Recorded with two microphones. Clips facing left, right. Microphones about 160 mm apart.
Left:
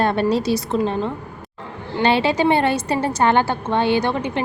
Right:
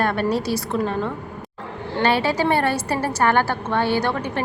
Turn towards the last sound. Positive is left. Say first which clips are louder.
# left 2 dB
turn(degrees=20)  # may be behind; listen again after turning